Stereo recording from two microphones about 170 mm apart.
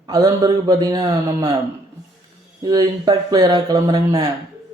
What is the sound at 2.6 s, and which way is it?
Speech, 20° right (ahead or behind).